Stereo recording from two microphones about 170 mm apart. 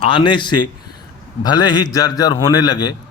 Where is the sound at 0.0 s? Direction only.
30° left (ahead or behind).